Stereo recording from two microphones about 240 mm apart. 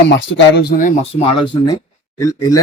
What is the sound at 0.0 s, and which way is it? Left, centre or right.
Speech, left.